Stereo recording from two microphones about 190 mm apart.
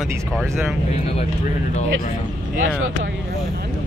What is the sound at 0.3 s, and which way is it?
Speech, centre (ahead or behind).